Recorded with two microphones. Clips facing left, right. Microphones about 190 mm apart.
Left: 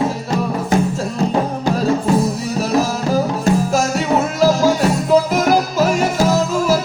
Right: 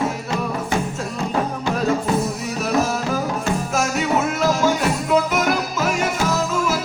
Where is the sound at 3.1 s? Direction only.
35° left (ahead or behind).